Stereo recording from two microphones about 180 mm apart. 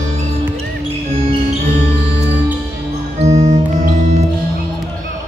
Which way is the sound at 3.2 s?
40° right (ahead or behind).